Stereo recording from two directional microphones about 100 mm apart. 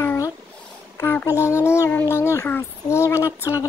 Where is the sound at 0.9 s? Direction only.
25° left (ahead or behind).